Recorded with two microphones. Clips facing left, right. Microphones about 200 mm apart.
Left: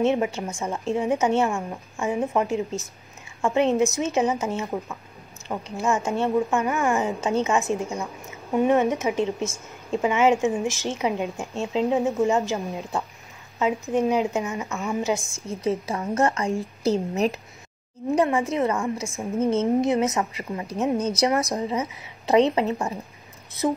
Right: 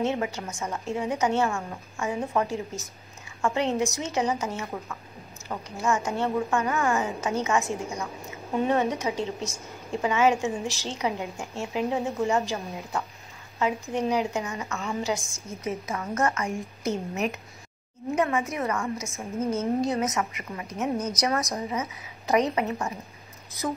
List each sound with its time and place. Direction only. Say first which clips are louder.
0.0 s a woman's voice: left 5 dB; 20° left (ahead or behind)